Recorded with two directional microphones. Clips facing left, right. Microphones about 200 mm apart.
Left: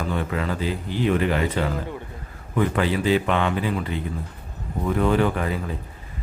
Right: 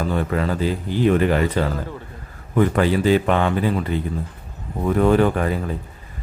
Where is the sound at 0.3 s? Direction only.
45° right (ahead or behind).